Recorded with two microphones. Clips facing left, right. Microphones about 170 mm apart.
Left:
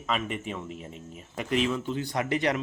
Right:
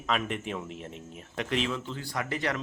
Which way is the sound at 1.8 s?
15° left (ahead or behind).